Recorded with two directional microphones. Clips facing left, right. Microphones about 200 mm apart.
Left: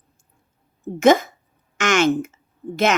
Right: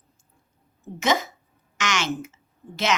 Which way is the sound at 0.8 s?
55° left (ahead or behind).